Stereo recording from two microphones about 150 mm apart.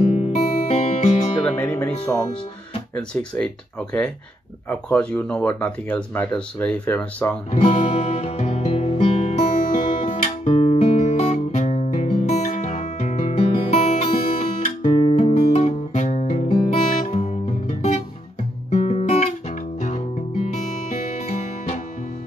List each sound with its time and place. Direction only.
0.0 s music: 50° left (ahead or behind)
1.6 s speech: 15° left (ahead or behind)
3.0 s speech: 5° left (ahead or behind)
4.6 s speech: 10° left (ahead or behind)
7.5 s music: 45° left (ahead or behind)
18.7 s guitar: 45° left (ahead or behind)